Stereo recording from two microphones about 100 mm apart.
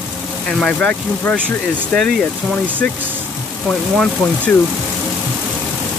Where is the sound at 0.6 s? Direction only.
10° left (ahead or behind).